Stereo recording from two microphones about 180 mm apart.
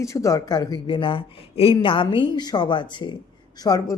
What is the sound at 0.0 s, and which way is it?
Speech, 15° left (ahead or behind).